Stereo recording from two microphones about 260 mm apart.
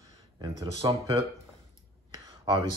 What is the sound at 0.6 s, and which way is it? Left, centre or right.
Speech, centre.